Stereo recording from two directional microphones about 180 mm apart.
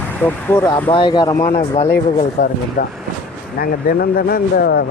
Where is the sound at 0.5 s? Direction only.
10° left (ahead or behind).